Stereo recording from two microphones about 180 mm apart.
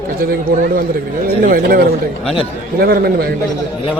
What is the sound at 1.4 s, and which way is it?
Speech, 55° right (ahead or behind).